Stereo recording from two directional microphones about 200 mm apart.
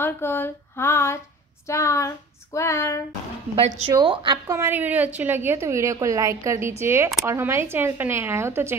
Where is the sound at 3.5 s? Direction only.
30° right (ahead or behind); by 8.7 s 10° right (ahead or behind).